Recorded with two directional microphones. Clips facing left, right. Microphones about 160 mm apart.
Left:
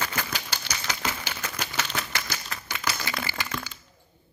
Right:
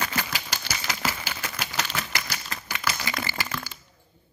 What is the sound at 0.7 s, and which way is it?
Typewriter, 10° right (ahead or behind).